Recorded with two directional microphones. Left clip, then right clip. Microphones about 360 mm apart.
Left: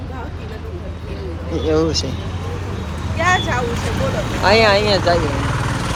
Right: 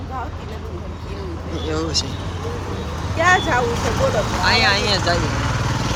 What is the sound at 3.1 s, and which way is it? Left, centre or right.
Speech, right.